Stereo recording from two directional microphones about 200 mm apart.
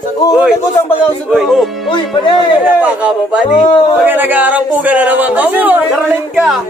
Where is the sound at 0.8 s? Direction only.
10° left (ahead or behind).